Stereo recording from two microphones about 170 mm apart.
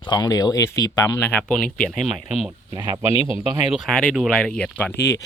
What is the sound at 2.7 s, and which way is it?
Speech, 25° right (ahead or behind).